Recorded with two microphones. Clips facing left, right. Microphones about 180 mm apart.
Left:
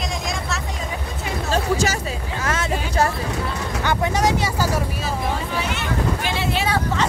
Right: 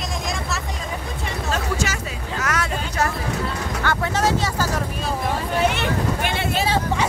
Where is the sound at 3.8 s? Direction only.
15° left (ahead or behind).